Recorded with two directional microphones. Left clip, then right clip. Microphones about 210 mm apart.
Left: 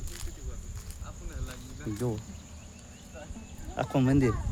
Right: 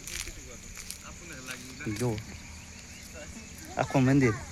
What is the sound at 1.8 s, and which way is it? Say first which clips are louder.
Speech: right 1 dB; 25° right (ahead or behind).